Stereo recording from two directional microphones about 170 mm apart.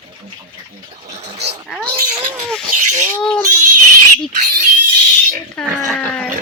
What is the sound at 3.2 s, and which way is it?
Speech, 10° left (ahead or behind).